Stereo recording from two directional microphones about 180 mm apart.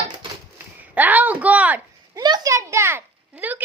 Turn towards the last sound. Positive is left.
turn(degrees=-10)  # may be behind; listen again after turning